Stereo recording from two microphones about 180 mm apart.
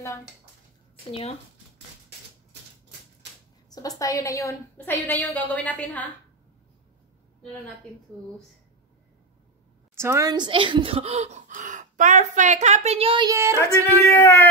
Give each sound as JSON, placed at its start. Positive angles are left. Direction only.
{"t": 4.0, "sound": "a woman's voice", "side_deg": 20}
{"t": 9.9, "sound": "speech", "side_deg": -15}
{"t": 13.3, "sound": "speech", "side_deg": -15}
{"t": 14.0, "sound": "a woman's voice", "side_deg": 15}